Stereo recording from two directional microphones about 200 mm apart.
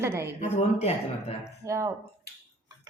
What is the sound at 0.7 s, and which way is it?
Speech, 30° left (ahead or behind).